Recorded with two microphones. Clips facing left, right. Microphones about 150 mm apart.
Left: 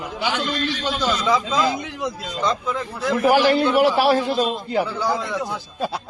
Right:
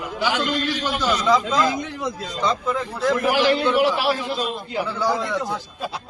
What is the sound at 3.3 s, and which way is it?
Speech, 45° left (ahead or behind).